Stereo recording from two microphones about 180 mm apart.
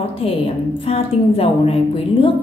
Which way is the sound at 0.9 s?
30° left (ahead or behind).